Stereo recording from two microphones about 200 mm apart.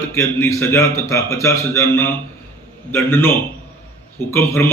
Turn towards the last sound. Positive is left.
turn(degrees=10)  # may be behind; listen again after turning